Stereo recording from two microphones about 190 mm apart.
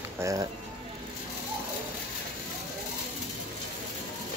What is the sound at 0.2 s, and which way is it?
Speech, 15° right (ahead or behind).